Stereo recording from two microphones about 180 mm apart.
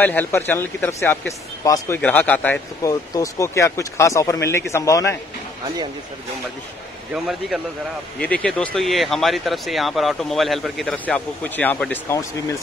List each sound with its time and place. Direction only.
0.0 s speech: 10° left (ahead or behind)
2.8 s speech: 20° left (ahead or behind)
7.2 s speech: centre (ahead or behind)